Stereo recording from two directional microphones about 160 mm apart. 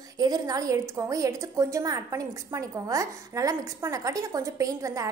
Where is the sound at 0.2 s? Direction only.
25° right (ahead or behind).